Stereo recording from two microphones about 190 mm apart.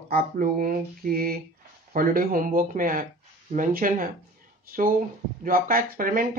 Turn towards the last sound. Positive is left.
turn(degrees=-50)  # may be behind; listen again after turning